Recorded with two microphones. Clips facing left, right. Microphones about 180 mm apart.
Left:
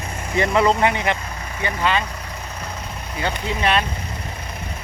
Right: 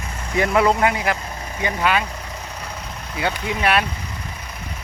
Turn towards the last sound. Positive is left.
turn(degrees=-10)  # may be behind; listen again after turning